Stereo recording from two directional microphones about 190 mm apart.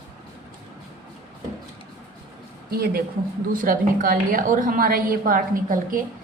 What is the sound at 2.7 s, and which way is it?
A woman's voice, 55° right (ahead or behind).